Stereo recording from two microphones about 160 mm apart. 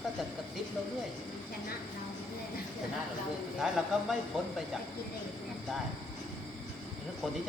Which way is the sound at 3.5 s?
5° right (ahead or behind).